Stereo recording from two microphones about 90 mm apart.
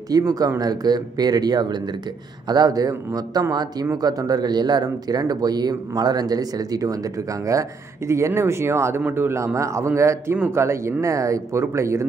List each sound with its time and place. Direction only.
0.1 s speech: 45° right (ahead or behind)
10.3 s speech: 20° right (ahead or behind)
10.6 s speech: 30° right (ahead or behind)